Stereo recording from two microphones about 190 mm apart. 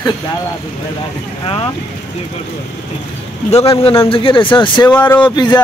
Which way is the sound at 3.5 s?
30° left (ahead or behind).